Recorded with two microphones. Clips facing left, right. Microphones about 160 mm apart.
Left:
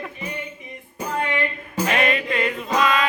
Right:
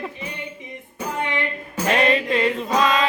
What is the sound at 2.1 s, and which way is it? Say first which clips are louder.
Chant: right 3 dB; 30° right (ahead or behind).